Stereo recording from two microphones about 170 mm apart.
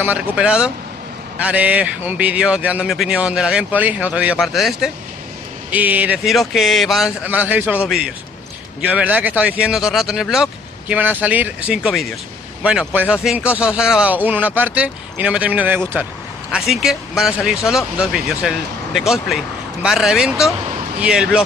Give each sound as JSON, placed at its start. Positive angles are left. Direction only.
{"t": 0.0, "sound": "a man's voice", "side_deg": -10}
{"t": 8.8, "sound": "a man's voice", "side_deg": -10}